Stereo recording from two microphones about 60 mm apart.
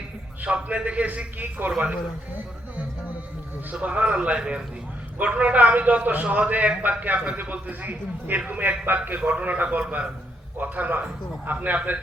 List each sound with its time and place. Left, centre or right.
0.4 s a man's voice: right
3.7 s a man's voice: right